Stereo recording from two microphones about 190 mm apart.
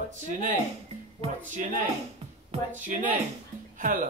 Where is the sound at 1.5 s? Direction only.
45° right (ahead or behind).